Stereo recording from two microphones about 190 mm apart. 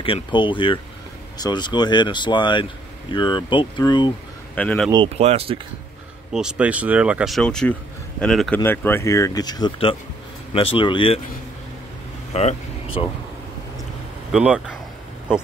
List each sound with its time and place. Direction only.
0.0 s speech: 25° left (ahead or behind)
4.6 s speech: 5° left (ahead or behind)
4.9 s speech: 30° right (ahead or behind)
6.3 s speech: 5° right (ahead or behind); by 11.1 s 25° left (ahead or behind)
12.4 s speech: 30° left (ahead or behind)
14.3 s speech: 5° right (ahead or behind)